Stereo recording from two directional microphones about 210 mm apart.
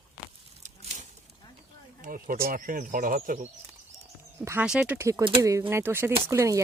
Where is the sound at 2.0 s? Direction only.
40° right (ahead or behind).